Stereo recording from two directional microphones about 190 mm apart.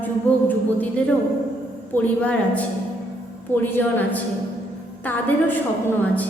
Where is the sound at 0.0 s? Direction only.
10° left (ahead or behind).